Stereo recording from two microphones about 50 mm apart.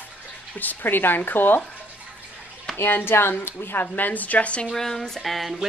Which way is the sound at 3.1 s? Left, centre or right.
Left.